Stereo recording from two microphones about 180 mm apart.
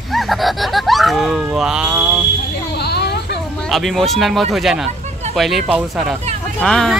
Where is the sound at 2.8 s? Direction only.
65° left (ahead or behind).